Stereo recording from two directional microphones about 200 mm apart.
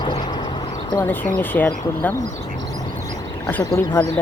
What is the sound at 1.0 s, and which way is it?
Speech, 10° left (ahead or behind).